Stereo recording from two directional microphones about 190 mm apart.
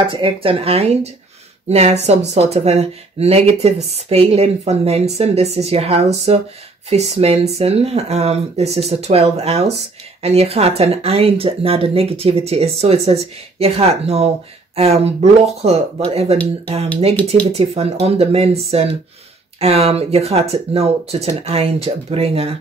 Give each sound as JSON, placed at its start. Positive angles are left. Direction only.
{"t": 0.0, "sound": "speech", "side_deg": -25}